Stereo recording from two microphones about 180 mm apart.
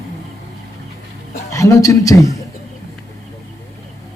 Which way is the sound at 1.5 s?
15° left (ahead or behind).